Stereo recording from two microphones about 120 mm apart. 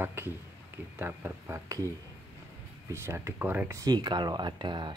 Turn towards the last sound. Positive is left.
turn(degrees=-40)  # may be behind; listen again after turning